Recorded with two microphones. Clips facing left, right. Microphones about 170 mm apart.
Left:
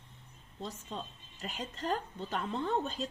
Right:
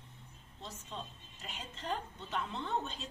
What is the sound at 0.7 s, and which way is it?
A woman's voice, 40° left (ahead or behind).